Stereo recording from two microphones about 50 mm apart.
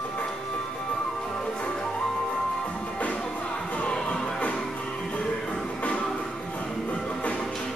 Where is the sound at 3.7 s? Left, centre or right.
Left.